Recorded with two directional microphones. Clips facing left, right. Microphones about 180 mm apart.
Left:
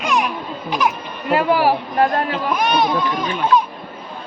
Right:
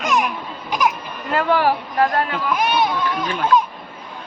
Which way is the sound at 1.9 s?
30° left (ahead or behind).